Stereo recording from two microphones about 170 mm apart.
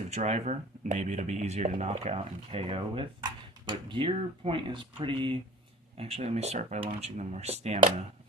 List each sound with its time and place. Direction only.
0.1 s speech: 40° right (ahead or behind)